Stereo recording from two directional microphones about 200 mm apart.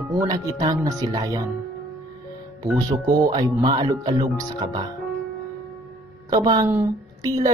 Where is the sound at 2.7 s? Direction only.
20° right (ahead or behind).